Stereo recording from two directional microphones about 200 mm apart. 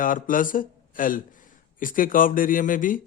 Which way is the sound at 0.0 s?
45° left (ahead or behind).